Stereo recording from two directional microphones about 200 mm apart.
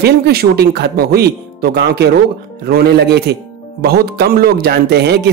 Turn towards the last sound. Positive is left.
turn(degrees=-55)  # may be behind; listen again after turning